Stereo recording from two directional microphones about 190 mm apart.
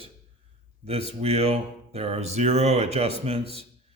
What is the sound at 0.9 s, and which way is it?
Speech, 35° right (ahead or behind).